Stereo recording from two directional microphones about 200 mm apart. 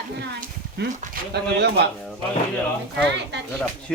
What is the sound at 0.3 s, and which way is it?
Speech, 50° right (ahead or behind).